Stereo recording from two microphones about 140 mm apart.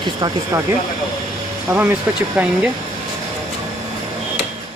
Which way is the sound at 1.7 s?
15° right (ahead or behind).